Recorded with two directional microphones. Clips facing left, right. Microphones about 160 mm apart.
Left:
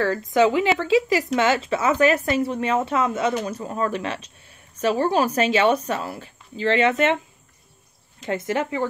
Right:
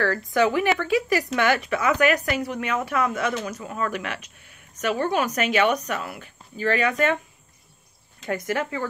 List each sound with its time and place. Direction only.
0.0 s speech: 20° left (ahead or behind)
8.3 s speech: 25° left (ahead or behind)